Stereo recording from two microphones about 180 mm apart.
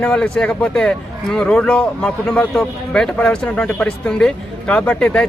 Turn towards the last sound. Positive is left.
turn(degrees=5)  # may be behind; listen again after turning